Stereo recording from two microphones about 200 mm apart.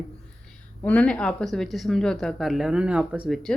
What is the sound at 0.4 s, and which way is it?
A woman's voice, 5° left (ahead or behind).